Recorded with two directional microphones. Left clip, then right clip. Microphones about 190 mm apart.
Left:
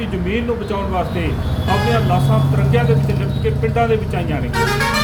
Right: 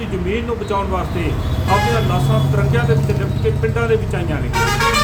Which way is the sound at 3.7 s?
15° right (ahead or behind).